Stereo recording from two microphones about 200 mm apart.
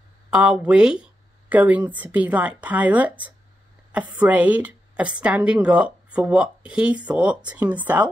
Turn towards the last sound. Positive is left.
turn(degrees=-10)  # may be behind; listen again after turning